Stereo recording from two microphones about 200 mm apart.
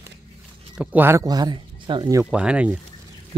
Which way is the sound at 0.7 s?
5° right (ahead or behind).